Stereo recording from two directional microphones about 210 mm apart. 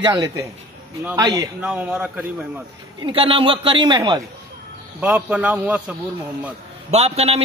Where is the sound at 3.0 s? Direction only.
25° right (ahead or behind).